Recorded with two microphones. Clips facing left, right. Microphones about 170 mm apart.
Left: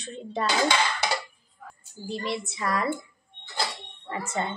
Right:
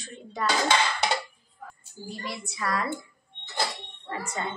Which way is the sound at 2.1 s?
25° left (ahead or behind).